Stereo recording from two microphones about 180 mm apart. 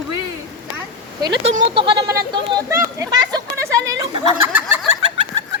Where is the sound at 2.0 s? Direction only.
20° right (ahead or behind).